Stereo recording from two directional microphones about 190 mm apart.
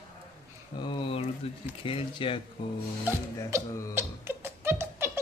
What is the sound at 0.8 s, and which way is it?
Speech, 25° left (ahead or behind).